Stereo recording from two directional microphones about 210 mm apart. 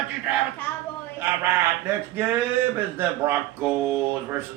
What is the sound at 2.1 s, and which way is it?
Speech, 10° right (ahead or behind).